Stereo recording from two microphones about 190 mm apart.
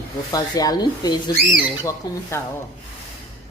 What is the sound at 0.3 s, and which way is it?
Speech, 20° left (ahead or behind).